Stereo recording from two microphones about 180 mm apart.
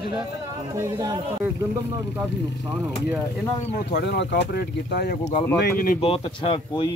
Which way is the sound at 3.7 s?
65° left (ahead or behind).